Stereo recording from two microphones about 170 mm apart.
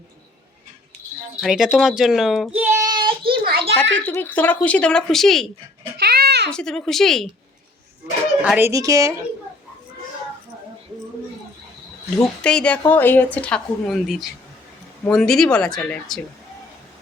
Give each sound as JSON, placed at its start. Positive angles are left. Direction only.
{"t": 1.4, "sound": "speech", "side_deg": 0}
{"t": 2.6, "sound": "child singing", "side_deg": -25}
{"t": 3.4, "sound": "a sound", "side_deg": -65}
{"t": 3.9, "sound": "speech", "side_deg": 10}
{"t": 6.0, "sound": "a sound", "side_deg": -70}
{"t": 6.5, "sound": "speech", "side_deg": 5}
{"t": 8.4, "sound": "speech", "side_deg": -10}
{"t": 12.4, "sound": "speech", "side_deg": 5}